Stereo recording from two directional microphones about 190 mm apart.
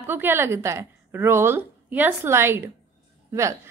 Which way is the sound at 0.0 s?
10° right (ahead or behind).